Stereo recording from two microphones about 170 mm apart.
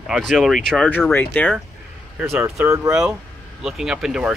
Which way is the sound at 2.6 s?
15° right (ahead or behind).